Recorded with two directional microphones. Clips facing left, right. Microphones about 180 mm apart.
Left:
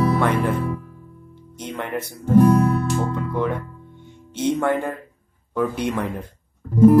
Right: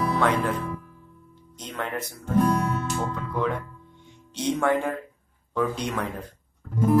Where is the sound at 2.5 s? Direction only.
35° left (ahead or behind).